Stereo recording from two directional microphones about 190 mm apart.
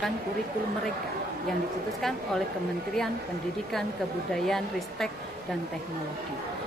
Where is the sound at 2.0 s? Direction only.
Centre (ahead or behind).